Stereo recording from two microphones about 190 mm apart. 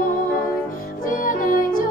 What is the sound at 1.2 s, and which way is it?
Music, 45° left (ahead or behind).